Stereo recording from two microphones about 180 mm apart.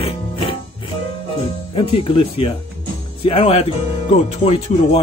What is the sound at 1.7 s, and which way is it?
Speech, 30° left (ahead or behind).